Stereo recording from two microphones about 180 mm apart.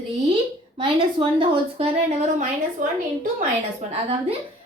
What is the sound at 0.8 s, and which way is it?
A woman's voice, 30° right (ahead or behind).